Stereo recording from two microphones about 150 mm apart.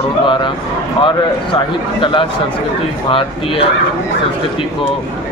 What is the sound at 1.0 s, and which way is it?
A man's voice, 35° left (ahead or behind).